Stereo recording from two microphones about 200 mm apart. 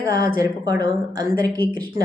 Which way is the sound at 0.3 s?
20° right (ahead or behind).